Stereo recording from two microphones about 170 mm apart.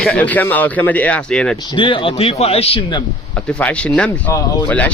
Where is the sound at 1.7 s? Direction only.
30° left (ahead or behind).